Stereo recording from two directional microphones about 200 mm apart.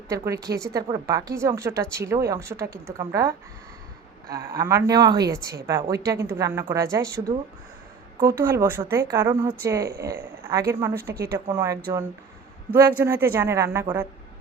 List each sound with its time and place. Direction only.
0.4 s speech: 15° right (ahead or behind)
4.5 s speech: 15° right (ahead or behind)
11.1 s speech: 50° right (ahead or behind)
11.4 s speech: 15° right (ahead or behind)
13.0 s speech: 10° right (ahead or behind)